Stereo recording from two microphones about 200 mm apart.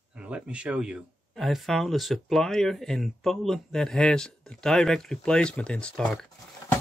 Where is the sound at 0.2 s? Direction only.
5° right (ahead or behind).